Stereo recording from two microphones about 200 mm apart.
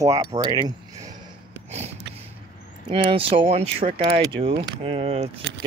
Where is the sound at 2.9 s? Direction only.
25° right (ahead or behind).